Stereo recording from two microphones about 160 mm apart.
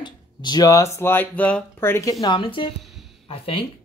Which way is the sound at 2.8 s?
Centre (ahead or behind).